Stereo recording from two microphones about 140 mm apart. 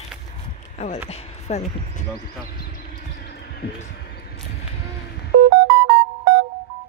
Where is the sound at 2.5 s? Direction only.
90° left.